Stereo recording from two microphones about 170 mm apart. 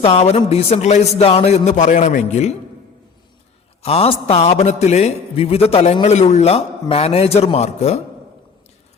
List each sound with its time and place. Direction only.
0.0 s a man's voice: 35° left (ahead or behind)
3.8 s a man's voice: 35° left (ahead or behind)